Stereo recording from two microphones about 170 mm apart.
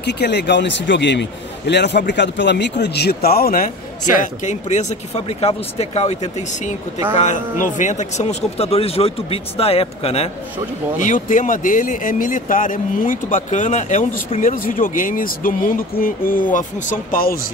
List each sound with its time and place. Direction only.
0.0 s a man's voice: 80° left; by 3.7 s 60° left (ahead or behind)
4.2 s a man's voice: 45° left (ahead or behind)
11.0 s speech: 50° left (ahead or behind)